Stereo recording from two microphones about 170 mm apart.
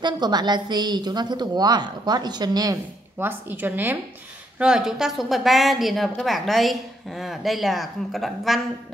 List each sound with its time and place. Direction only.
0.0 s a woman's voice: 25° right (ahead or behind); by 8.5 s centre (ahead or behind)